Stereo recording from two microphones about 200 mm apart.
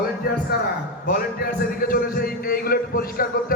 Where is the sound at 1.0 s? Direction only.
45° left (ahead or behind).